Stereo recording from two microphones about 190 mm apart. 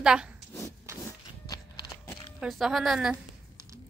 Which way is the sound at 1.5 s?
20° left (ahead or behind).